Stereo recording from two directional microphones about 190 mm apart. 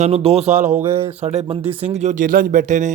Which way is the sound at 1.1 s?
35° right (ahead or behind).